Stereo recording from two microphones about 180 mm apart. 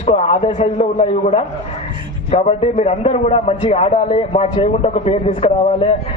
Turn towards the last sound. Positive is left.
turn(degrees=35)  # may be behind; listen again after turning